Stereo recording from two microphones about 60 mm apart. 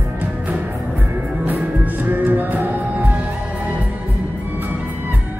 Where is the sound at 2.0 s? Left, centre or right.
Right.